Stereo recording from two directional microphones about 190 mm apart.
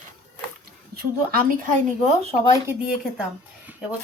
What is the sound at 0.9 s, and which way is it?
Speech, 50° right (ahead or behind).